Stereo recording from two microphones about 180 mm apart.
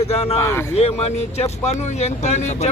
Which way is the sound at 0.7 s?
35° left (ahead or behind).